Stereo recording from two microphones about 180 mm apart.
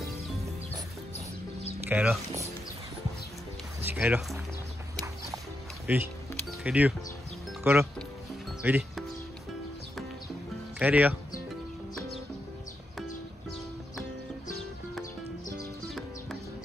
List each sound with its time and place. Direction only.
1.1 s music: 35° left (ahead or behind)
1.9 s speech: 10° right (ahead or behind)
3.8 s music: 10° right (ahead or behind)
5.9 s speech: 10° right (ahead or behind)
10.8 s speech: 10° right (ahead or behind)